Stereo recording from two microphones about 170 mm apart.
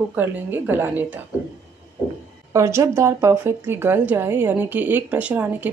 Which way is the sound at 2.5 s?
15° right (ahead or behind).